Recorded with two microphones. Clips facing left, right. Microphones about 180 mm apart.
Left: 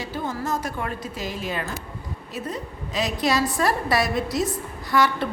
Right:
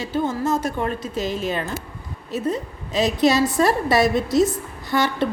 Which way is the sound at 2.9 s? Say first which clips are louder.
Right 5 dB; 25° right (ahead or behind).